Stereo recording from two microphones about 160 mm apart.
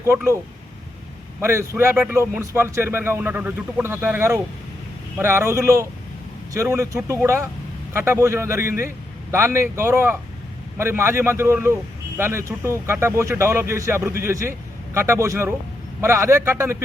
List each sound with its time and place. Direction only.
1.4 s a man's voice: 15° right (ahead or behind)